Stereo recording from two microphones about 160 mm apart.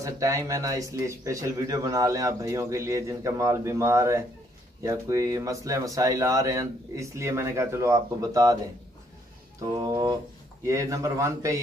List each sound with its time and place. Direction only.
0.0 s speech: 20° right (ahead or behind)
9.6 s speech: 20° right (ahead or behind)